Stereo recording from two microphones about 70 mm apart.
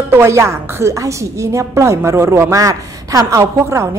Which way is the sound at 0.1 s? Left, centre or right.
Right.